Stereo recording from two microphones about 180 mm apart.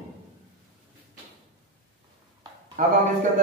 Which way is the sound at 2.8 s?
45° right (ahead or behind).